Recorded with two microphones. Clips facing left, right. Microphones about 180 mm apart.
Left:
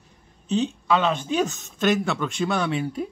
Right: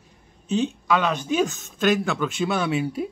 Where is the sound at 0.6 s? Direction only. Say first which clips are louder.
Even; 20° left (ahead or behind).